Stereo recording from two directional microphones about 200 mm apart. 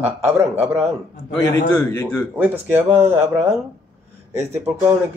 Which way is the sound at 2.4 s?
10° right (ahead or behind).